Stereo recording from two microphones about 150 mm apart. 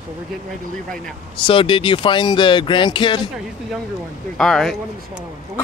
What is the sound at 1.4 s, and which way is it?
Speech, 35° left (ahead or behind).